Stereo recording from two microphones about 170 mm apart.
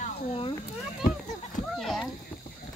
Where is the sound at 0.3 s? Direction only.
30° left (ahead or behind).